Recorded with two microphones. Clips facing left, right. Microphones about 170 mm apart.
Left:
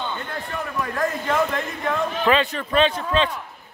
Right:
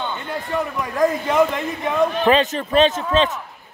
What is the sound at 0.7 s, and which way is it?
A man's voice, 20° right (ahead or behind).